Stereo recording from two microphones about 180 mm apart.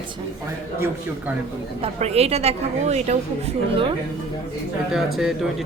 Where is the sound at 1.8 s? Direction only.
35° right (ahead or behind).